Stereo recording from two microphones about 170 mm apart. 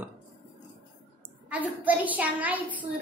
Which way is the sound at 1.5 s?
10° right (ahead or behind).